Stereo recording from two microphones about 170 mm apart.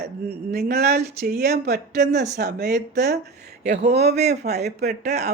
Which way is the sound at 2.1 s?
45° right (ahead or behind).